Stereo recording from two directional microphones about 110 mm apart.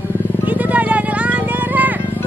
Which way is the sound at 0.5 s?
15° right (ahead or behind).